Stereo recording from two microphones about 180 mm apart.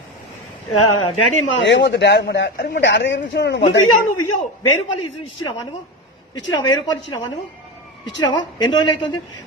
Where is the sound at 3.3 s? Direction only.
70° left (ahead or behind).